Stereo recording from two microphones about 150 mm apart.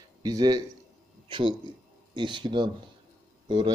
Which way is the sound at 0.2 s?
25° right (ahead or behind).